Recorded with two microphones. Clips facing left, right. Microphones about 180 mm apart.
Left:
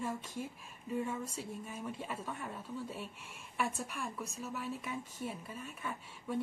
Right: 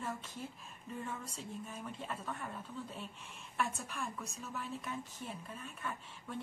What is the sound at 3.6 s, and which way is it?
A woman's voice, 5° left (ahead or behind).